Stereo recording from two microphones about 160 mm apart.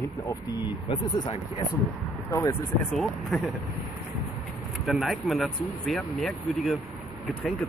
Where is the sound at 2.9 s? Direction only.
Centre (ahead or behind).